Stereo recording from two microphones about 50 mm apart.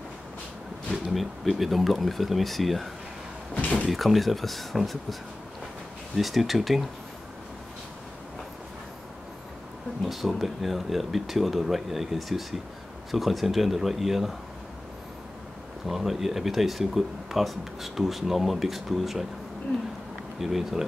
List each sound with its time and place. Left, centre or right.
0.9 s a sound: centre
1.4 s speech: centre
3.5 s a sound: left
3.8 s speech: centre
6.1 s speech: centre
10.0 s speech: centre
15.9 s speech: centre
20.3 s speech: centre